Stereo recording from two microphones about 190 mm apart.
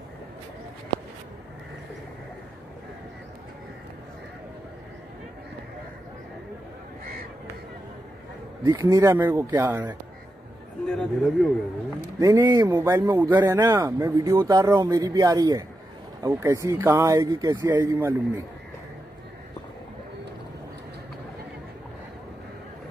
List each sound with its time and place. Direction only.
8.6 s speech: 20° right (ahead or behind)
10.9 s speech: 5° left (ahead or behind)
12.2 s a man's voice: 20° right (ahead or behind)